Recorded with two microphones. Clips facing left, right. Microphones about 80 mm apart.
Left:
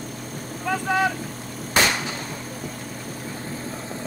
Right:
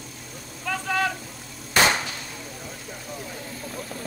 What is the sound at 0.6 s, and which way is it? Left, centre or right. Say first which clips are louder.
Vehicle: left 3 dB; centre.